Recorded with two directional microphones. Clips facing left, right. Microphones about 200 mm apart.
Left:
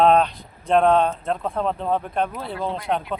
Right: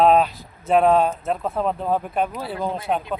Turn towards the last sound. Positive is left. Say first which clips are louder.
# right 1 dB
turn(degrees=-5)  # may be behind; listen again after turning